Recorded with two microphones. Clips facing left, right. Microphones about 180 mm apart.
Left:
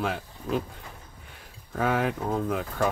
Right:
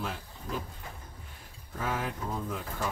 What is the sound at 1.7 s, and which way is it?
Speech, 65° left (ahead or behind).